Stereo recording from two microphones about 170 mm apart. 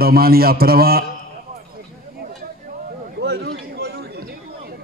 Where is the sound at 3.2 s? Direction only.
75° right (ahead or behind).